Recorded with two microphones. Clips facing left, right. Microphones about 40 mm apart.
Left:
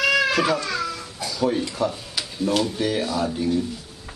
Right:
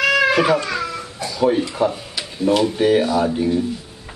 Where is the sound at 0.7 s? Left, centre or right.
Centre.